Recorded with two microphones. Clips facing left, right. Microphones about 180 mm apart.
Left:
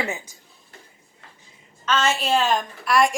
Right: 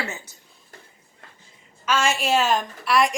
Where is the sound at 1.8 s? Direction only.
10° right (ahead or behind).